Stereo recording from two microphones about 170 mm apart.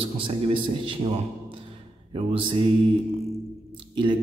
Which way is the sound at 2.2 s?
30° right (ahead or behind).